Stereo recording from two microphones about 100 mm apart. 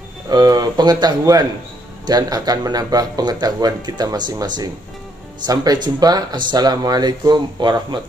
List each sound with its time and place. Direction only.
0.3 s speech: 40° right (ahead or behind)